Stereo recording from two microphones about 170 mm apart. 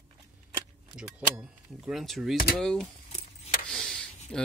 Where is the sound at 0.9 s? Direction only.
5° right (ahead or behind).